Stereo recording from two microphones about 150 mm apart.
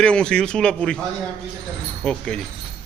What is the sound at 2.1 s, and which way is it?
Speech, 5° left (ahead or behind).